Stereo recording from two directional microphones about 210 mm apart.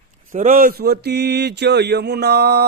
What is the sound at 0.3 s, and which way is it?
Mantra, 40° right (ahead or behind).